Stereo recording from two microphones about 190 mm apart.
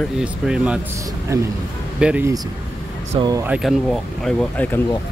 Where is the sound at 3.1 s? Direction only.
25° right (ahead or behind).